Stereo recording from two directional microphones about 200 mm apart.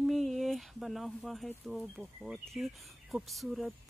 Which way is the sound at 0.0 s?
Centre (ahead or behind).